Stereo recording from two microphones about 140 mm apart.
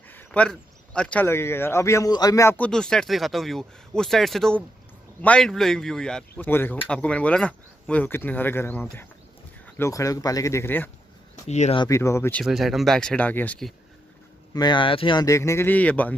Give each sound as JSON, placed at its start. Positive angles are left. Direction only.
{"t": 0.1, "sound": "a sound", "side_deg": 10}
{"t": 1.2, "sound": "speech", "side_deg": 15}
{"t": 2.5, "sound": "speech", "side_deg": 5}
{"t": 11.4, "sound": "speech", "side_deg": 55}
{"t": 11.9, "sound": "speech", "side_deg": 20}
{"t": 12.4, "sound": "speech", "side_deg": 0}
{"t": 14.5, "sound": "speech", "side_deg": 30}
{"t": 15.2, "sound": "speech", "side_deg": 20}